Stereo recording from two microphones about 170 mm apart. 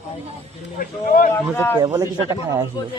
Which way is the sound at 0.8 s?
55° left (ahead or behind).